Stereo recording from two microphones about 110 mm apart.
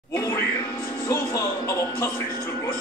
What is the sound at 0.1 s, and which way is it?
Music, 30° left (ahead or behind).